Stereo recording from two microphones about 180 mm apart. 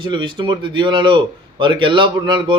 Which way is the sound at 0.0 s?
25° right (ahead or behind).